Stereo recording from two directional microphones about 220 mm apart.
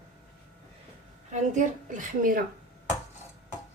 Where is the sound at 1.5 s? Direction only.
35° right (ahead or behind).